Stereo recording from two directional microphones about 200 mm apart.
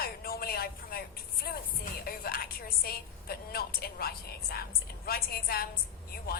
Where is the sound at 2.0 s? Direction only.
50° left (ahead or behind).